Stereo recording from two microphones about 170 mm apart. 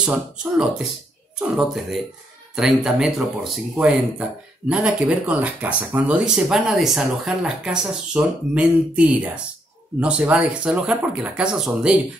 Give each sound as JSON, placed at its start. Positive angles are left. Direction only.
{"t": 0.0, "sound": "speech", "side_deg": -5}